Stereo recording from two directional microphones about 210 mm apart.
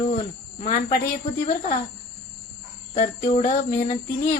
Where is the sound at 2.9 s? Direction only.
35° left (ahead or behind).